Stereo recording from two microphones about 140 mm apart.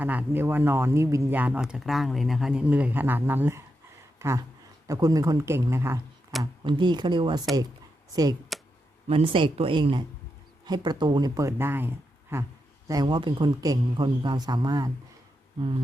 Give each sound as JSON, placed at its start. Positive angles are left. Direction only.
{"t": 0.0, "sound": "speech", "side_deg": -10}
{"t": 4.2, "sound": "a sound", "side_deg": -20}
{"t": 4.9, "sound": "speech", "side_deg": -25}
{"t": 6.4, "sound": "speech", "side_deg": -35}
{"t": 9.0, "sound": "speech", "side_deg": -45}
{"t": 12.9, "sound": "speech", "side_deg": -30}